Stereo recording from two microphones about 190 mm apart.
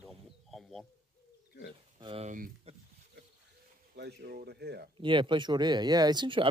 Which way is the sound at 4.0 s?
60° right (ahead or behind).